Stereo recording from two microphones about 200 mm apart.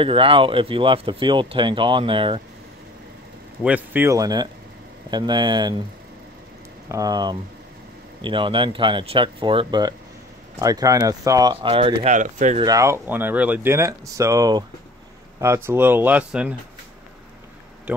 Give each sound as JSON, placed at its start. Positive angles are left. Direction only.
{"t": 0.0, "sound": "speech", "side_deg": -25}
{"t": 3.6, "sound": "speech", "side_deg": -10}
{"t": 6.9, "sound": "speech", "side_deg": -20}
{"t": 11.5, "sound": "speech", "side_deg": -25}
{"t": 12.5, "sound": "speech", "side_deg": -15}